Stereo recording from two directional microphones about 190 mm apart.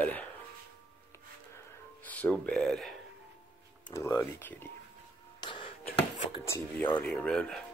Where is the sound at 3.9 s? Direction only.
15° left (ahead or behind).